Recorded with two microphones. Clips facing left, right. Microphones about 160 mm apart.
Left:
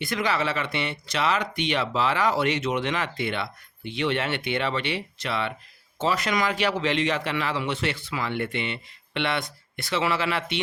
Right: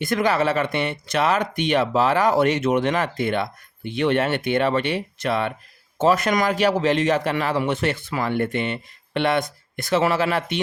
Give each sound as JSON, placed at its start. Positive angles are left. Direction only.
{"t": 0.0, "sound": "speech", "side_deg": -50}